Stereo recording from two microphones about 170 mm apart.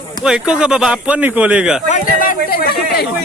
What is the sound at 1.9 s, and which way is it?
Speech, 60° left (ahead or behind).